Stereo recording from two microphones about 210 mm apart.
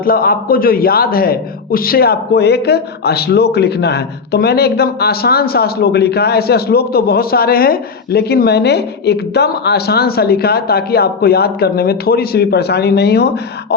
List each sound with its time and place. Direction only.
0.0 s a man's voice: 45° left (ahead or behind)